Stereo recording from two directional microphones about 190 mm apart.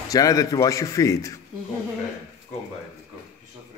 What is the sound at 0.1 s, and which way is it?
A man's voice, 20° left (ahead or behind).